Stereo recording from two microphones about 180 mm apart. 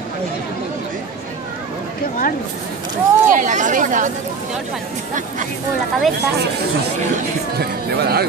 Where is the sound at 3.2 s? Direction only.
45° right (ahead or behind).